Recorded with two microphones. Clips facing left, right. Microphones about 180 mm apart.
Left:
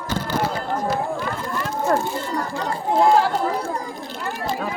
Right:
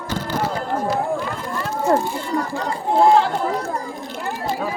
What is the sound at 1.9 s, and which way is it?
Speech, 20° right (ahead or behind).